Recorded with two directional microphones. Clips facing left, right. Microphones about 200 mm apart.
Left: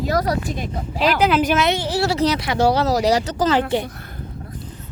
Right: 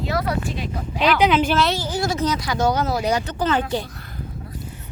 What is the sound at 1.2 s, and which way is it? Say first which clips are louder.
Speech: left 1 dB; 5° left (ahead or behind).